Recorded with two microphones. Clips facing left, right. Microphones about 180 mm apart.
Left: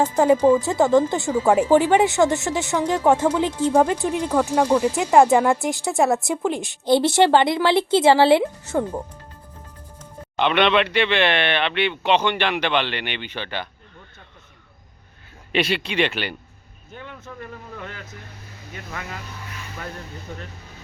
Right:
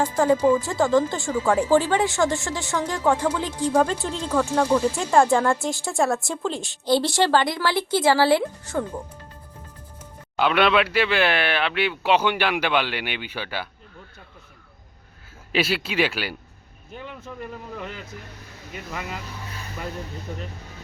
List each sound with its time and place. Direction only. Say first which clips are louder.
0.0 s speech: left 3 dB; 20° left (ahead or behind)
10.3 s speech: left 1 dB; 5° right (ahead or behind)
15.5 s speech: left 1 dB; 5° right (ahead or behind)